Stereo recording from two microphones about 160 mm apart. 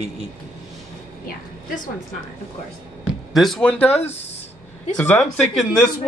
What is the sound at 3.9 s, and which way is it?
Speech, 40° left (ahead or behind).